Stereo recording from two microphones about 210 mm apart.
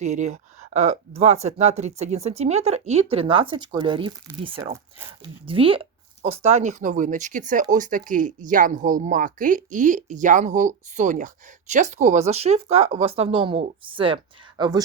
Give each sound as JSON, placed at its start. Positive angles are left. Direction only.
{"t": 0.0, "sound": "speech", "side_deg": -35}